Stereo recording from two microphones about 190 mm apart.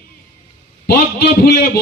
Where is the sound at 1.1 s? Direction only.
55° left (ahead or behind).